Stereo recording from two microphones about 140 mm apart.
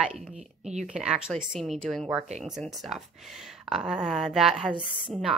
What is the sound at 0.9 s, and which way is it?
A woman's voice, 5° right (ahead or behind).